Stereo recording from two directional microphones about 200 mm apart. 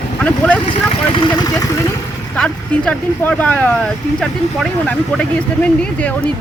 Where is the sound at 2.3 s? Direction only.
5° left (ahead or behind).